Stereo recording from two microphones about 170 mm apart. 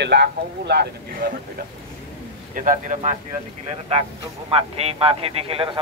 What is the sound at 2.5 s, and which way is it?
Speech, 50° right (ahead or behind).